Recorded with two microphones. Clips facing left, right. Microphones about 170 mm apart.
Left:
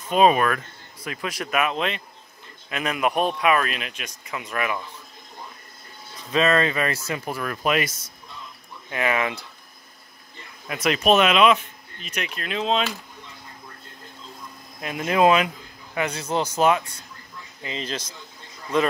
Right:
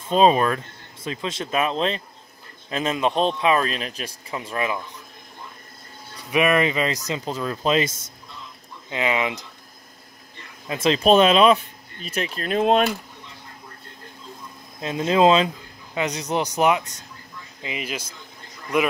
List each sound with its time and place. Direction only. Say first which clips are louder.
0.1 s speech: right 1 dB; 30° right (ahead or behind)
6.3 s speech: right 1 dB; 15° right (ahead or behind)
10.7 s speech: right 3 dB; 25° right (ahead or behind); by 12.9 s 50° right (ahead or behind)
14.8 s speech: right 2 dB; 25° right (ahead or behind)